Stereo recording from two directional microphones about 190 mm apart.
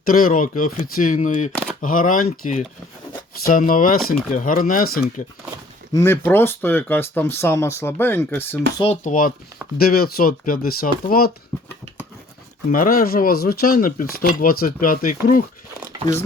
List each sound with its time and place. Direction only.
0.0 s speech: 50° left (ahead or behind)
5.9 s speech: 15° left (ahead or behind)
8.8 s speech: 35° left (ahead or behind); by 11.3 s 50° left (ahead or behind)
12.7 s speech: 50° left (ahead or behind)